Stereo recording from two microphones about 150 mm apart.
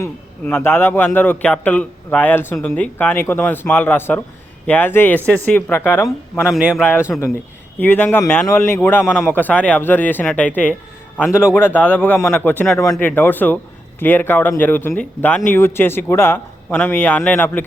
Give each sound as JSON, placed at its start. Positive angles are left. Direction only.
{"t": 0.0, "sound": "a man's voice", "side_deg": 15}
{"t": 6.4, "sound": "a man's voice", "side_deg": -10}
{"t": 9.0, "sound": "a man's voice", "side_deg": -5}
{"t": 9.3, "sound": "a man's voice", "side_deg": 10}
{"t": 12.7, "sound": "speech", "side_deg": 25}
{"t": 13.0, "sound": "a man's voice", "side_deg": 10}